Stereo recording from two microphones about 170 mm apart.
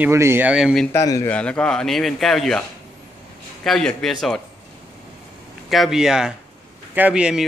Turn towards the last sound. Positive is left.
turn(degrees=-5)  # may be behind; listen again after turning